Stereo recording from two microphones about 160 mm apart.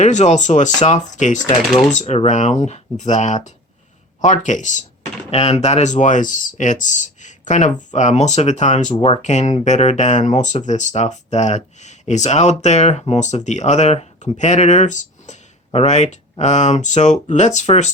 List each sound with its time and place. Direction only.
0.0 s speech: 45° left (ahead or behind)